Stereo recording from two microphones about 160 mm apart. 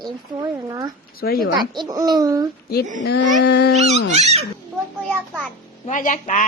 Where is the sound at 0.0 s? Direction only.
25° right (ahead or behind).